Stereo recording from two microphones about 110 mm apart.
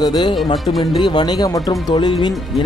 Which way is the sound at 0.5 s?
Centre (ahead or behind).